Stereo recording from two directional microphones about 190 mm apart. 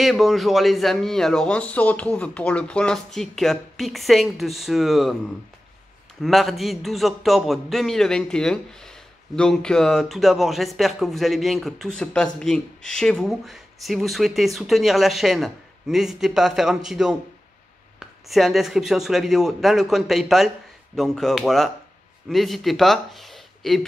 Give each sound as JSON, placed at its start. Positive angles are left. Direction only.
{"t": 0.0, "sound": "a man's voice", "side_deg": 0}
{"t": 6.2, "sound": "a man's voice", "side_deg": 0}